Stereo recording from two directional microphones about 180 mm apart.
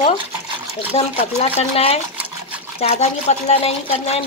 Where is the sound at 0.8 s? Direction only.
35° left (ahead or behind).